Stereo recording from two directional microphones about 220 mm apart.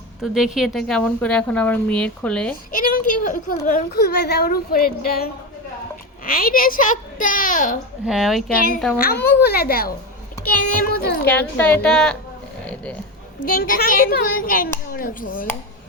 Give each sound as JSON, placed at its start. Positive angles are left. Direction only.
{"t": 0.2, "sound": "a woman's voice", "side_deg": 0}
{"t": 2.7, "sound": "a woman's voice", "side_deg": 40}
{"t": 8.0, "sound": "a woman's voice", "side_deg": 0}
{"t": 9.0, "sound": "a woman's voice", "side_deg": 45}
{"t": 10.9, "sound": "speech", "side_deg": 45}
{"t": 11.3, "sound": "a woman's voice", "side_deg": 10}
{"t": 12.6, "sound": "a sound", "side_deg": 5}
{"t": 13.5, "sound": "a child's voice", "side_deg": 40}